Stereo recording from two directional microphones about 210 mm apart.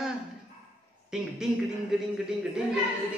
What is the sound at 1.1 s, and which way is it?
A man's voice, centre (ahead or behind).